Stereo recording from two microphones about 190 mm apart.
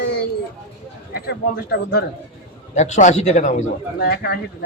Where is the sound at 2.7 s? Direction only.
40° left (ahead or behind).